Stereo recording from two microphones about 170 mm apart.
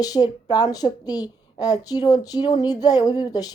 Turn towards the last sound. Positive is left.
turn(degrees=20)  # may be behind; listen again after turning